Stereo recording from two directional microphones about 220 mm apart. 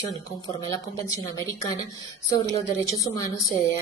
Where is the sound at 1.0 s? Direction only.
15° left (ahead or behind).